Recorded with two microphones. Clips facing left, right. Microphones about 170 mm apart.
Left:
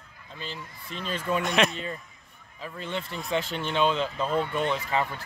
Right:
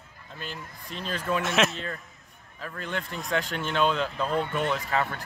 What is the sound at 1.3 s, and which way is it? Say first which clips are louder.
Speech: even; centre (ahead or behind).